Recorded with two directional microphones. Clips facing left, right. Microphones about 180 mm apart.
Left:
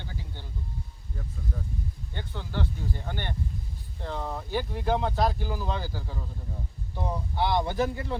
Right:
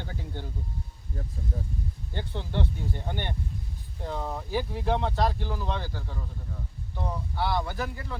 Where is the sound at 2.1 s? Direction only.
25° right (ahead or behind).